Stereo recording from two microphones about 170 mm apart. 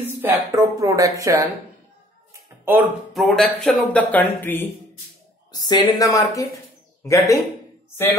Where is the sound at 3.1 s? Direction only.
Centre (ahead or behind).